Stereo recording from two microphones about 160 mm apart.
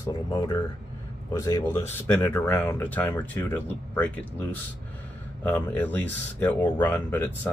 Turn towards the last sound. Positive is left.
turn(degrees=10)  # may be behind; listen again after turning